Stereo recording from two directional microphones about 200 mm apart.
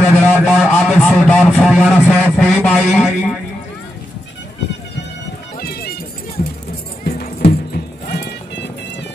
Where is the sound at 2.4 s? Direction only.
5° left (ahead or behind).